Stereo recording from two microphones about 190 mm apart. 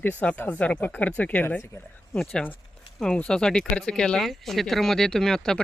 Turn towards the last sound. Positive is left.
turn(degrees=5)  # may be behind; listen again after turning